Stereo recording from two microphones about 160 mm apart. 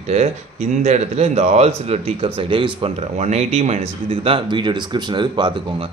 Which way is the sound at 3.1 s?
45° right (ahead or behind).